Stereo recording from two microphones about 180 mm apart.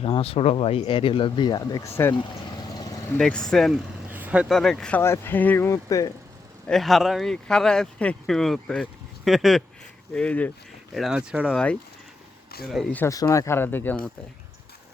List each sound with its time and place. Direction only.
0.0 s speech: 30° left (ahead or behind); by 2.1 s 15° left (ahead or behind)
2.7 s vehicle: 20° left (ahead or behind)
3.2 s speech: 5° left (ahead or behind)
4.1 s speech: 10° right (ahead or behind); by 6.1 s 20° left (ahead or behind)
6.7 s speech: centre (ahead or behind)
10.9 s speech: 5° right (ahead or behind)
11.5 s speech: 5° left (ahead or behind)